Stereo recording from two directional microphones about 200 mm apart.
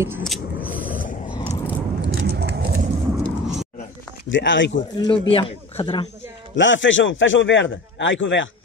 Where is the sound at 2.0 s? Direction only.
55° right (ahead or behind).